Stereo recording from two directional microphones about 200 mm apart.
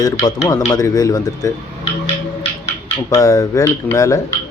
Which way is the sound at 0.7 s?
20° left (ahead or behind).